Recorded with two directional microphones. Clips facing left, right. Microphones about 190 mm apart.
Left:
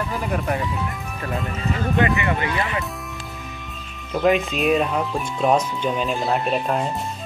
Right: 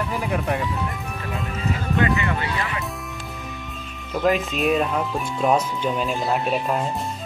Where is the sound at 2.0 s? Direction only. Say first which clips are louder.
Left 1 dB; 20° left (ahead or behind).